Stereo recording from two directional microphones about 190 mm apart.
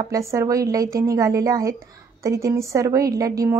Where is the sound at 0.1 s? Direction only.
15° right (ahead or behind).